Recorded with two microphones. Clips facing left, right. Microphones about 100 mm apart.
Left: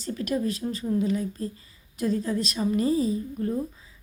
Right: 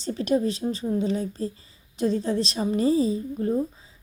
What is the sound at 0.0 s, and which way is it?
A woman's voice, 25° right (ahead or behind).